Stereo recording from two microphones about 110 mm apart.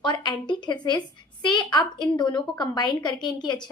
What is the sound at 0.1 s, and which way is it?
A woman's voice, 45° left (ahead or behind).